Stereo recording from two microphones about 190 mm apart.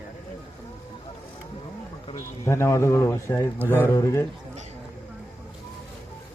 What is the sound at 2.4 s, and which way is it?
Speech, 15° left (ahead or behind).